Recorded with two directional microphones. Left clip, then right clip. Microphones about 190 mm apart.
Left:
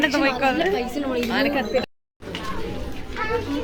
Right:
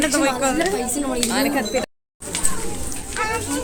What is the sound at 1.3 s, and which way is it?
Speech, 40° right (ahead or behind).